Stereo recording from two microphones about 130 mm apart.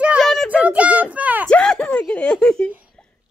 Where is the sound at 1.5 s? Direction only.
5° left (ahead or behind).